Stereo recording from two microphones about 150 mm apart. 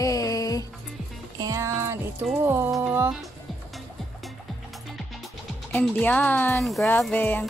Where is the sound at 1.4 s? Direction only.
20° right (ahead or behind).